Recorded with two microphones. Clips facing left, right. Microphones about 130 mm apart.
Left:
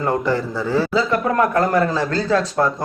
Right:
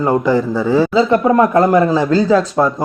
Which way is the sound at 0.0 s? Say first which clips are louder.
Right 6 dB; 15° right (ahead or behind).